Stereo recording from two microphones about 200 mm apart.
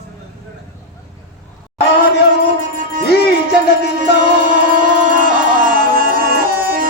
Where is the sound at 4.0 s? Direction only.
40° right (ahead or behind).